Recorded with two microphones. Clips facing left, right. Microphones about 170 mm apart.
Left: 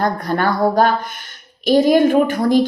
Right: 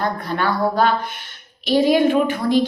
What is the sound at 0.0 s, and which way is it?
A woman's voice, 45° left (ahead or behind).